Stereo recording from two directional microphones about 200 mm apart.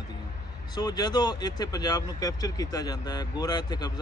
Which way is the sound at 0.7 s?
20° left (ahead or behind).